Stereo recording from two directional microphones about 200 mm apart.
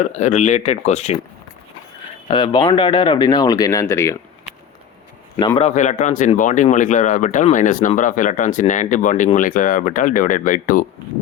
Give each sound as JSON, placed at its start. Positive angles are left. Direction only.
{"t": 0.0, "sound": "speech", "side_deg": 35}
{"t": 2.2, "sound": "speech", "side_deg": 20}
{"t": 5.4, "sound": "speech", "side_deg": 25}